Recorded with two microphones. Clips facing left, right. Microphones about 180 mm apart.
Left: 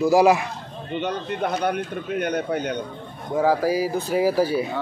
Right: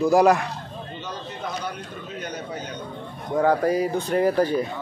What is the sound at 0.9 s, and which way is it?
Speech, 60° left (ahead or behind).